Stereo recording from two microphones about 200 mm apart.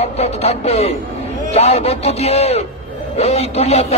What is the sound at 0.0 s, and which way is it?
Speech, 30° left (ahead or behind).